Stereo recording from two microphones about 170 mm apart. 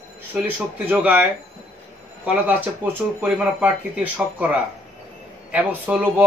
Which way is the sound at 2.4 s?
10° right (ahead or behind).